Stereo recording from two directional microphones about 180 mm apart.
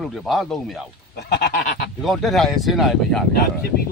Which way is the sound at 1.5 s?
45° left (ahead or behind).